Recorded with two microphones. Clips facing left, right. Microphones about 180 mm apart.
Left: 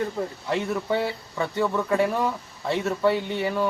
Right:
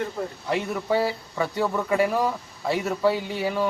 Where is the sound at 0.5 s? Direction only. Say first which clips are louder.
Right 1 dB; 5° right (ahead or behind).